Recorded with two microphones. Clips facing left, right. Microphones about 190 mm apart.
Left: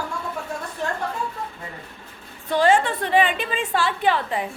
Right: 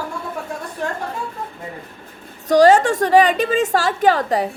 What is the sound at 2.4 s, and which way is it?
A woman's voice, 40° right (ahead or behind).